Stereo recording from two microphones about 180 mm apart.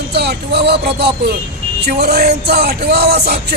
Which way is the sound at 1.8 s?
65° right (ahead or behind).